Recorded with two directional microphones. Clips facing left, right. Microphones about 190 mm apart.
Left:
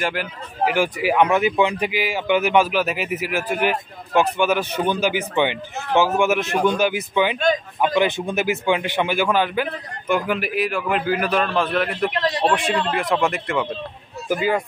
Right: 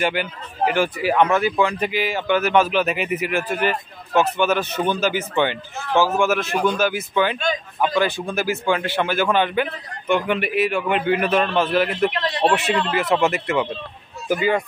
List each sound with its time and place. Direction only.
0.0 s speech: centre (ahead or behind)
0.7 s speech: 10° left (ahead or behind); by 12.1 s 5° right (ahead or behind)
12.1 s speech: 40° left (ahead or behind)
12.4 s speech: 5° right (ahead or behind)
14.3 s speech: 5° left (ahead or behind)